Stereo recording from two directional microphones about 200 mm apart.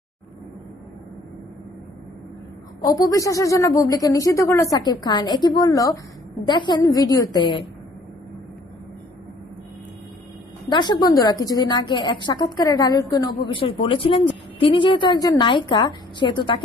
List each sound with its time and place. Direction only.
2.8 s a woman's voice: 15° left (ahead or behind)
10.7 s a woman's voice: 20° left (ahead or behind)